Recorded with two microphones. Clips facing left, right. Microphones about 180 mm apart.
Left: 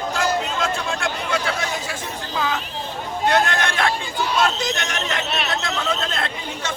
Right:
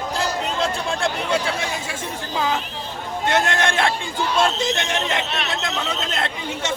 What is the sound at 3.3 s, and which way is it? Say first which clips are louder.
Chatter: even; 25° right (ahead or behind).